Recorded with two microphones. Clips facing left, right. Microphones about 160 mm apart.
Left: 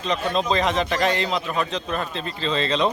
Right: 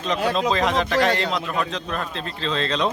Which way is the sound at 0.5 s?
Centre (ahead or behind).